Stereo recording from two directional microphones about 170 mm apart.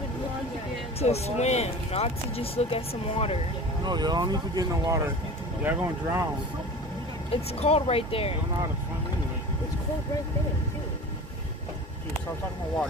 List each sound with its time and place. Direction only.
0.9 s speech: 40° left (ahead or behind)
3.8 s speech: 25° right (ahead or behind)
7.5 s speech: 35° left (ahead or behind)